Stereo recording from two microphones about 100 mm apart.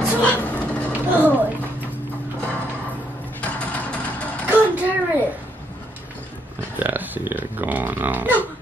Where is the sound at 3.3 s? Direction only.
15° left (ahead or behind).